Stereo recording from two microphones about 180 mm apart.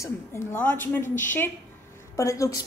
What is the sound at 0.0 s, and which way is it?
A woman's voice, 15° left (ahead or behind).